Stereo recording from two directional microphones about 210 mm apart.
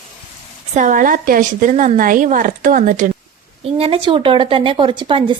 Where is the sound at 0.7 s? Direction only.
40° right (ahead or behind).